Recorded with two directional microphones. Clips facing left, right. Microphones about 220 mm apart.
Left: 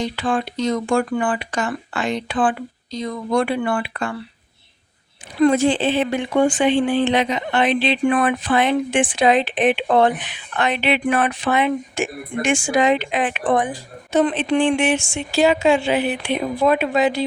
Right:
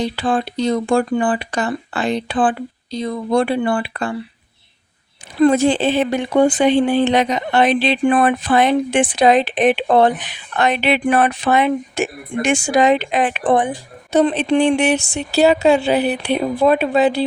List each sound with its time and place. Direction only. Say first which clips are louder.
0.0 s speech: right 3 dB; 35° right (ahead or behind)
5.4 s speech: right 2 dB; 40° right (ahead or behind)